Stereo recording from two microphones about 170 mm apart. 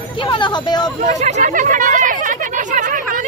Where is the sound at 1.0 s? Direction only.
45° right (ahead or behind).